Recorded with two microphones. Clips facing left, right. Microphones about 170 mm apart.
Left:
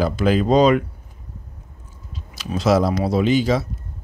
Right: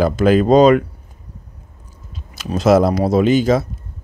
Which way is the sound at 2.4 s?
50° right (ahead or behind).